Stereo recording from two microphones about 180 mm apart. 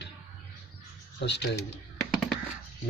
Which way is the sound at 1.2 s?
70° left (ahead or behind).